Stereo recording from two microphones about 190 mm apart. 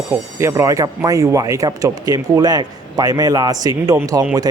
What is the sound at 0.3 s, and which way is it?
A man's voice, 15° right (ahead or behind).